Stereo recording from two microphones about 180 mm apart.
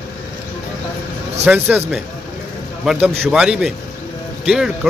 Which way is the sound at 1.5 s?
10° right (ahead or behind).